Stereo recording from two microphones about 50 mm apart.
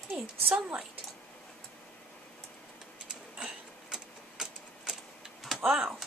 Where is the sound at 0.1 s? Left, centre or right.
Right.